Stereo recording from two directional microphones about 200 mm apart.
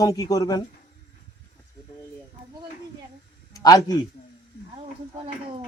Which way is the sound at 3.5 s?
20° left (ahead or behind).